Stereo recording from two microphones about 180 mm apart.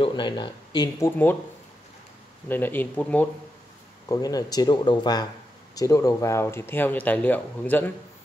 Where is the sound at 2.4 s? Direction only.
10° left (ahead or behind).